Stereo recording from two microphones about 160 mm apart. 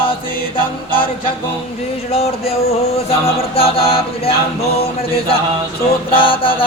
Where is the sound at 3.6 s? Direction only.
35° left (ahead or behind).